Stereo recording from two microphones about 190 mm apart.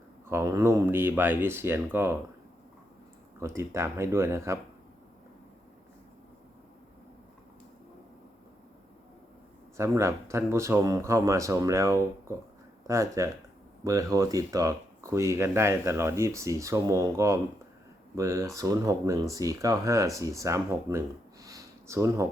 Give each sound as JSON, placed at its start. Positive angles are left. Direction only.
{"t": 0.3, "sound": "speech", "side_deg": -15}
{"t": 3.4, "sound": "speech", "side_deg": -15}
{"t": 9.7, "sound": "speech", "side_deg": -15}
{"t": 21.4, "sound": "a sound", "side_deg": -15}